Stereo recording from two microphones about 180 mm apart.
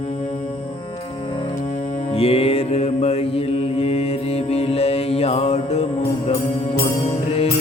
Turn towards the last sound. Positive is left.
turn(degrees=35)  # may be behind; listen again after turning